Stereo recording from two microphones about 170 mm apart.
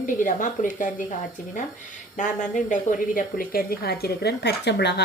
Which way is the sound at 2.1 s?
50° left (ahead or behind).